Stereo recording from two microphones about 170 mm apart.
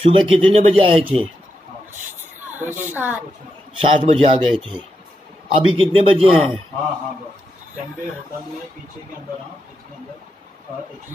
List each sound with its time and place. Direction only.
0.0 s a man's voice: 35° right (ahead or behind)
1.0 s speech: centre (ahead or behind)
2.5 s a woman's voice: 10° right (ahead or behind)
3.7 s a man's voice: 35° right (ahead or behind)